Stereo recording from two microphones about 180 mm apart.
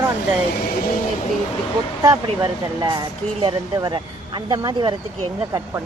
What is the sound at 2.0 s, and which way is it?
Speech, 20° right (ahead or behind).